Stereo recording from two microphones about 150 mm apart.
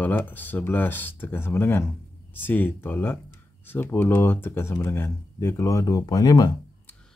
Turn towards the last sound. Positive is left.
turn(degrees=30)  # may be behind; listen again after turning